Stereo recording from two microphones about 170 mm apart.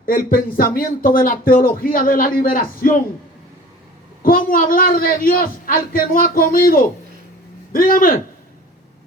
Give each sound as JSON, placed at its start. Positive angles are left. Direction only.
{"t": 0.0, "sound": "a man's voice", "side_deg": 55}
{"t": 4.2, "sound": "a man's voice", "side_deg": 55}